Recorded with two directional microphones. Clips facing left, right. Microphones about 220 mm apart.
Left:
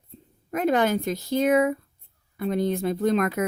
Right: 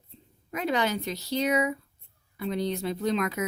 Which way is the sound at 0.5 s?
50° left (ahead or behind).